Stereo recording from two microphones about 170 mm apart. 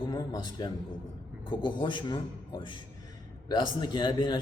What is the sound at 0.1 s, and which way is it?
A man's voice, 25° left (ahead or behind).